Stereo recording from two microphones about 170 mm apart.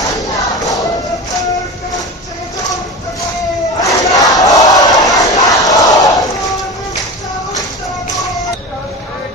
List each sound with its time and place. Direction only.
0.6 s music: 20° left (ahead or behind)
3.8 s battle cry: 20° left (ahead or behind)